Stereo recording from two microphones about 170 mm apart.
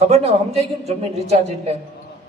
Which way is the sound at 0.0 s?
40° right (ahead or behind).